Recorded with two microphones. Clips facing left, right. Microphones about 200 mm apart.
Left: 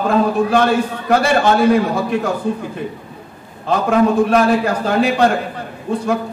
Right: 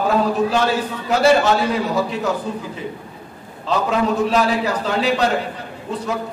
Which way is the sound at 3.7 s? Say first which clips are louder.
Left 5 dB; 55° left (ahead or behind).